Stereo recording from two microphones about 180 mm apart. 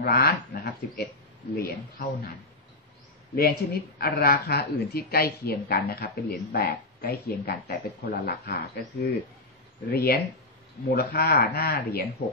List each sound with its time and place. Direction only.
0.0 s speech: 55° left (ahead or behind)
4.0 s speech: 60° left (ahead or behind)
6.5 s speech: 50° left (ahead or behind)